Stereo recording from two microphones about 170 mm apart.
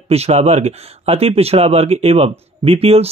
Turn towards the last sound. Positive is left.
turn(degrees=-35)  # may be behind; listen again after turning